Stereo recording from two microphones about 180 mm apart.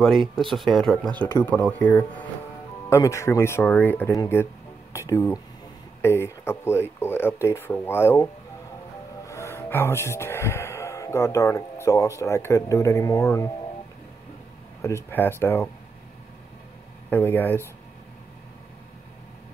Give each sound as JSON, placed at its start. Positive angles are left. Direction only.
{"t": 0.5, "sound": "speech", "side_deg": 0}
{"t": 14.8, "sound": "speech", "side_deg": 15}
{"t": 17.1, "sound": "speech", "side_deg": 10}